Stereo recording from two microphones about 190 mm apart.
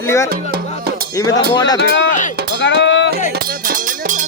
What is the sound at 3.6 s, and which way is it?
Music, 45° right (ahead or behind).